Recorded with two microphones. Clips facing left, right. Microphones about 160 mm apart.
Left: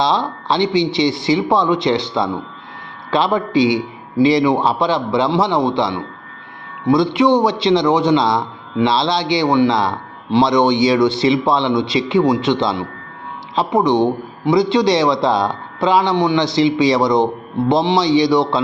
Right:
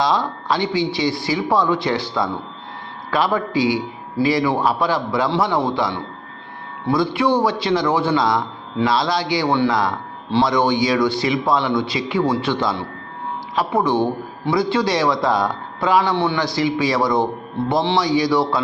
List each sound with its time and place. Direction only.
0.0 s a man's voice: 25° left (ahead or behind)